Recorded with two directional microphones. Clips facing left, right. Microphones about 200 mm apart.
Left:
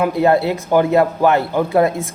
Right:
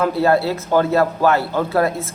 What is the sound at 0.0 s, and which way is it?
A man's voice, 20° left (ahead or behind).